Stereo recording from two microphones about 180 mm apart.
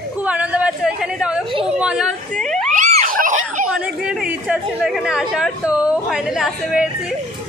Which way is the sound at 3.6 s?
5° right (ahead or behind).